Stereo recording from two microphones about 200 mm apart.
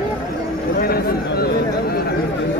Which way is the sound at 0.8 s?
50° left (ahead or behind).